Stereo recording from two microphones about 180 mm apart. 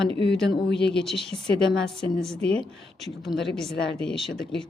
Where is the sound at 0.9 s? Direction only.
Centre (ahead or behind).